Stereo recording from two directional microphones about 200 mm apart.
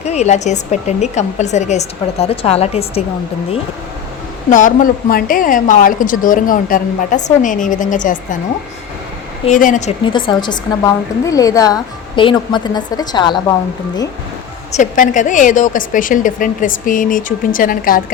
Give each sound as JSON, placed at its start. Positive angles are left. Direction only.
{"t": 0.0, "sound": "a woman's voice", "side_deg": 35}
{"t": 4.4, "sound": "a woman's voice", "side_deg": 40}
{"t": 9.5, "sound": "a woman's voice", "side_deg": 40}
{"t": 10.1, "sound": "a woman's voice", "side_deg": 25}
{"t": 14.7, "sound": "a woman's voice", "side_deg": 40}